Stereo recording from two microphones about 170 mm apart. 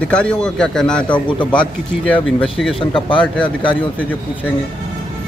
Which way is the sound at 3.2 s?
5° left (ahead or behind).